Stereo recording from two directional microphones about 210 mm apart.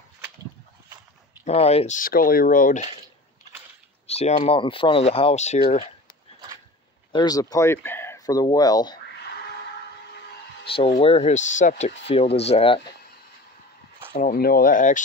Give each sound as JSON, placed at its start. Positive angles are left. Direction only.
{"t": 1.4, "sound": "speech", "side_deg": 30}
{"t": 4.1, "sound": "speech", "side_deg": 30}
{"t": 7.1, "sound": "speech", "side_deg": 20}
{"t": 10.6, "sound": "music", "side_deg": 25}
{"t": 11.0, "sound": "speech", "side_deg": 30}
{"t": 14.1, "sound": "speech", "side_deg": 40}